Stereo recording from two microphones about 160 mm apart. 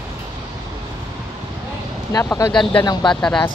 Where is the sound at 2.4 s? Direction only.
30° left (ahead or behind).